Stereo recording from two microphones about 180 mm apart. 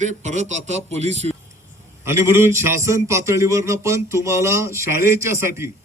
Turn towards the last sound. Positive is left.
turn(degrees=-15)  # may be behind; listen again after turning